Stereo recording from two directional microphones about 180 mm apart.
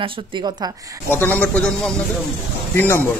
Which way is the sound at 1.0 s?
10° left (ahead or behind).